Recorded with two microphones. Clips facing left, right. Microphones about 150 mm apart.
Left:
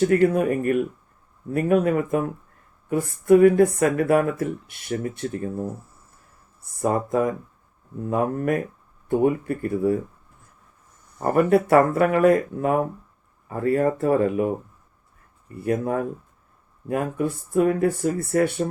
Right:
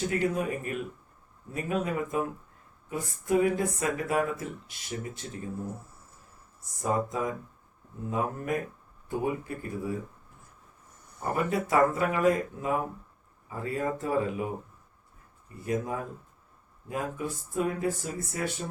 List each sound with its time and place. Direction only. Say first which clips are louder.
0.1 s speech: left 10 dB; 60° left (ahead or behind)
6.8 s speech: left 7 dB; 60° left (ahead or behind)
11.2 s speech: left 11 dB; 60° left (ahead or behind)
15.5 s speech: left 8 dB; 60° left (ahead or behind)